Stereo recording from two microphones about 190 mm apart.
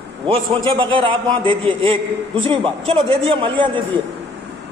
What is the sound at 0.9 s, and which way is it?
Speech, 25° right (ahead or behind).